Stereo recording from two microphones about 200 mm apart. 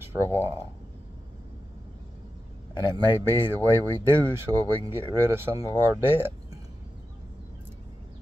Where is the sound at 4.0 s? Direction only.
10° right (ahead or behind).